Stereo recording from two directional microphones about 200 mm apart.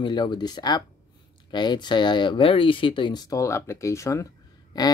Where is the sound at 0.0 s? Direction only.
20° left (ahead or behind).